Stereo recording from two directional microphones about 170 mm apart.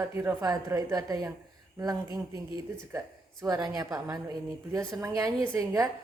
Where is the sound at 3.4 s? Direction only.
20° right (ahead or behind).